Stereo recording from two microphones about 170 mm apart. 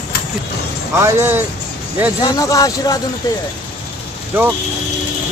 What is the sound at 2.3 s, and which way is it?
Speech, 20° left (ahead or behind).